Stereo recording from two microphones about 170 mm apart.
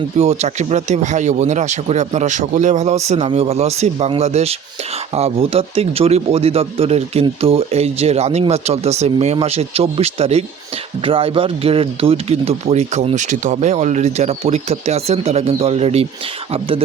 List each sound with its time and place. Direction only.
0.2 s speech: 40° right (ahead or behind)